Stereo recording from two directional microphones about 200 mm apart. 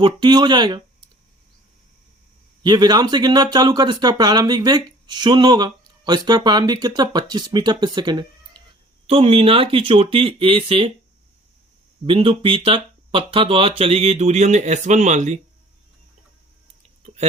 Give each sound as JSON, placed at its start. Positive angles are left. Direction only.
{"t": 0.0, "sound": "speech", "side_deg": -25}
{"t": 2.6, "sound": "speech", "side_deg": -20}
{"t": 12.0, "sound": "speech", "side_deg": -25}